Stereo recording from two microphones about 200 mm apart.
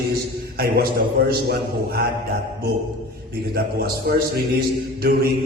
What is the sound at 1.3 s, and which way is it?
Mantra, 50° right (ahead or behind).